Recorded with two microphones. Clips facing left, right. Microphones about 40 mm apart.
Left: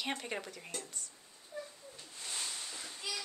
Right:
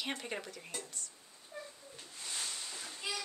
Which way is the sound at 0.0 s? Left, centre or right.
Centre.